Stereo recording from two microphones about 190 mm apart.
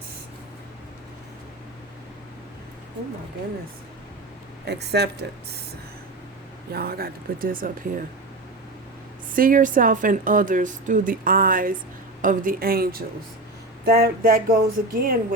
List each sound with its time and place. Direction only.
4.6 s speech: 60° right (ahead or behind)
6.7 s a woman's voice: 50° right (ahead or behind)
9.3 s a woman's voice: 45° right (ahead or behind)